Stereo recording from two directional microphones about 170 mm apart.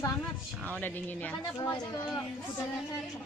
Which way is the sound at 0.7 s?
10° left (ahead or behind).